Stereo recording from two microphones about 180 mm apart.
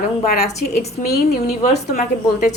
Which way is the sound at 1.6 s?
40° left (ahead or behind).